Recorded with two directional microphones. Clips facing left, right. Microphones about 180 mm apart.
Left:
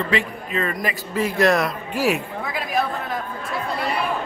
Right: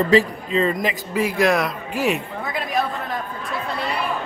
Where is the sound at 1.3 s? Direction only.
Centre (ahead or behind).